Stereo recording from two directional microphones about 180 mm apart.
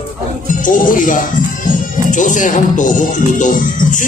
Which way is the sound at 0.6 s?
50° left (ahead or behind).